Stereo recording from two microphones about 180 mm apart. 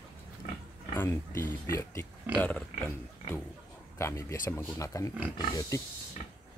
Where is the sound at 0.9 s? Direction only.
15° left (ahead or behind).